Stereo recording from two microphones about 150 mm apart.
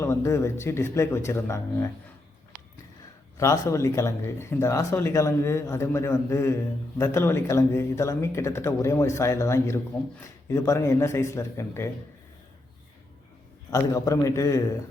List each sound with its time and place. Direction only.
0.0 s speech: 15° left (ahead or behind)
3.3 s speech: 20° left (ahead or behind)
13.7 s speech: 20° left (ahead or behind)